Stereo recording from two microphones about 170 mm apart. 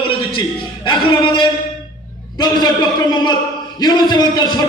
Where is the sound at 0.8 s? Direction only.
25° left (ahead or behind).